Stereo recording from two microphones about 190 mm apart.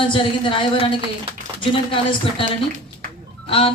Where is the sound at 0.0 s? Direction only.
25° left (ahead or behind).